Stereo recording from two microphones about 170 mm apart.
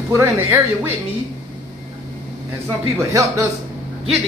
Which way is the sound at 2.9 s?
15° right (ahead or behind).